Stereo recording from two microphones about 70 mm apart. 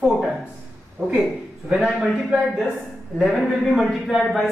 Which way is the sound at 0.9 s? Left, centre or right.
Right.